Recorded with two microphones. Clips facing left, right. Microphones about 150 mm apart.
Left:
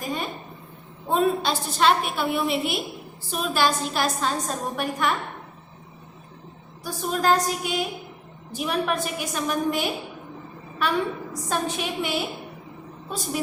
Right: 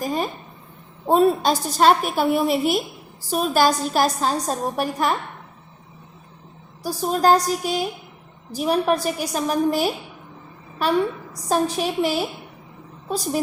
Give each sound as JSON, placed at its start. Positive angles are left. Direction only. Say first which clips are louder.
{"t": 0.0, "sound": "a woman's voice", "louder": "right 5 dB", "side_deg": -40}
{"t": 6.8, "sound": "a woman's voice", "louder": "right 5 dB", "side_deg": -35}
{"t": 11.4, "sound": "a woman's voice", "louder": "right 6 dB", "side_deg": -40}